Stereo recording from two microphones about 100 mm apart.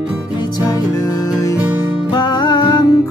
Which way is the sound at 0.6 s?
35° left (ahead or behind).